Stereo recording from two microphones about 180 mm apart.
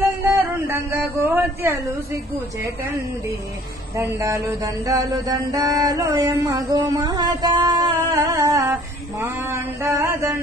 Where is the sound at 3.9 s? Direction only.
15° right (ahead or behind).